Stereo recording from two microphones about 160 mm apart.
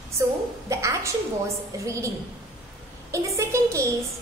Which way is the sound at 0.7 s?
20° right (ahead or behind).